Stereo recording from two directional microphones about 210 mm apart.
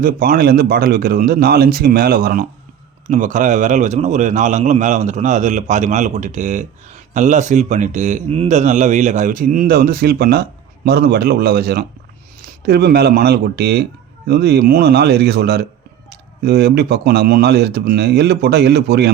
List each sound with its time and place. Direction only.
0.0 s speech: 45° right (ahead or behind)